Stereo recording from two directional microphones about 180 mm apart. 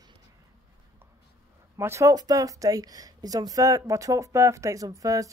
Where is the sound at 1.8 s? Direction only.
15° right (ahead or behind).